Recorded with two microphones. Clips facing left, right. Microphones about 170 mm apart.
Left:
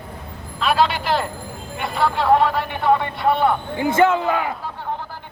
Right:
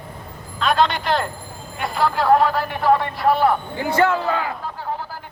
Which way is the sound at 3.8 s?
20° left (ahead or behind).